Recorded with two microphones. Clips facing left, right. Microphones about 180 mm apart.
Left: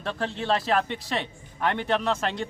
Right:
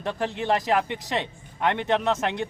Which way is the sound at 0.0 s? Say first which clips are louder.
Right 2 dB; 15° right (ahead or behind).